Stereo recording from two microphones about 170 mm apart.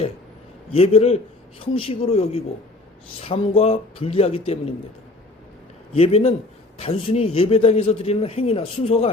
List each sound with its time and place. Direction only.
0.7 s a man's voice: 35° left (ahead or behind)
6.0 s a man's voice: 35° left (ahead or behind)